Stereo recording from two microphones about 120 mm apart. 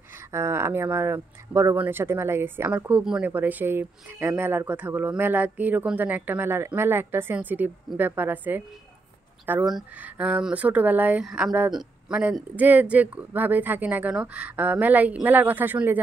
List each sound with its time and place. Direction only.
0.3 s speech: 20° right (ahead or behind)
11.2 s speech: centre (ahead or behind)
12.1 s speech: 10° right (ahead or behind)